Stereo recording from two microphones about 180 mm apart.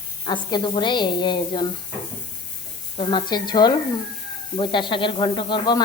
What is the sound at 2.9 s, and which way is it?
Speech, 25° left (ahead or behind).